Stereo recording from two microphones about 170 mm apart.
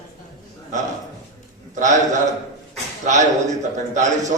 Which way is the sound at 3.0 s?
45° right (ahead or behind).